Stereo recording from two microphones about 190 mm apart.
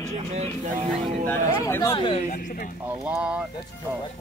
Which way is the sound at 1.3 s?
10° left (ahead or behind).